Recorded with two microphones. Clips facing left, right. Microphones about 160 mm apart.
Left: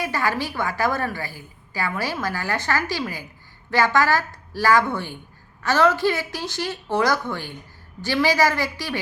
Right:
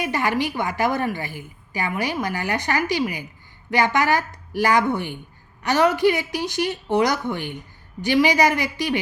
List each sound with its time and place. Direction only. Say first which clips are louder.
0.0 s a woman's voice: right 2 dB; 20° right (ahead or behind)